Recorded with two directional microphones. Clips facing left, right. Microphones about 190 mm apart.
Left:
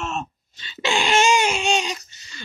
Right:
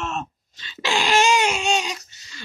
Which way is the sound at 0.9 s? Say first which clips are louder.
Even; centre (ahead or behind).